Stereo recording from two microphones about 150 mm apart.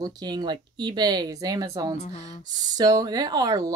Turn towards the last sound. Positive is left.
turn(degrees=-25)  # may be behind; listen again after turning